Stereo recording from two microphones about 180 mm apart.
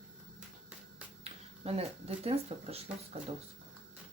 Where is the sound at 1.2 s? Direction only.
35° right (ahead or behind).